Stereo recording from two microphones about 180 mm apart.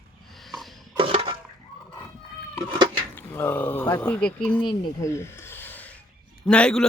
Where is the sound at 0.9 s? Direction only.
30° right (ahead or behind).